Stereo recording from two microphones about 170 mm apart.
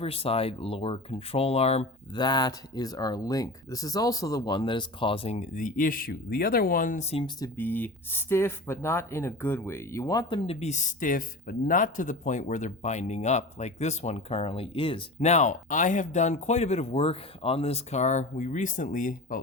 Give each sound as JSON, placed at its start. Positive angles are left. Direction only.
{"t": 0.0, "sound": "speech", "side_deg": 35}
{"t": 2.1, "sound": "speech", "side_deg": 25}
{"t": 7.3, "sound": "speech", "side_deg": 15}